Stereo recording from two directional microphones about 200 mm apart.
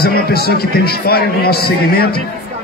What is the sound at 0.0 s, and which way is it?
A man's voice, 50° left (ahead or behind).